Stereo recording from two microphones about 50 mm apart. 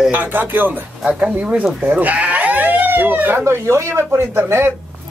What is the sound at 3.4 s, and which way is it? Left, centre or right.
Speech, right.